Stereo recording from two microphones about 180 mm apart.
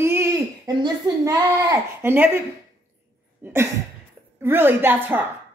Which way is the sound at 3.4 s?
10° right (ahead or behind).